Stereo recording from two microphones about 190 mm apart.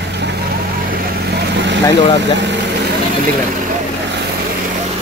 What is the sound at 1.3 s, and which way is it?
Vehicle, 65° right (ahead or behind).